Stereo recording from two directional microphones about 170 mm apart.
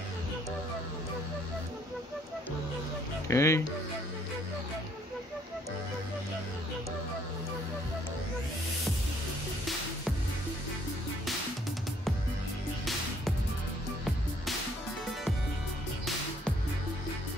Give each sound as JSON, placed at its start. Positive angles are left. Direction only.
{"t": 3.3, "sound": "speech", "side_deg": 15}